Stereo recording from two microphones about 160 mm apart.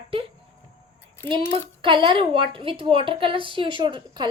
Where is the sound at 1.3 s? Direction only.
35° right (ahead or behind).